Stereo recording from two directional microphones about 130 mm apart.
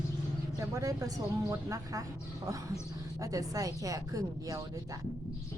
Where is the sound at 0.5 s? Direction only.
25° right (ahead or behind).